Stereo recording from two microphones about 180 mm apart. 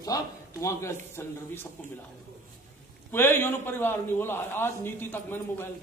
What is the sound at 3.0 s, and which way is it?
A man's voice, 10° left (ahead or behind).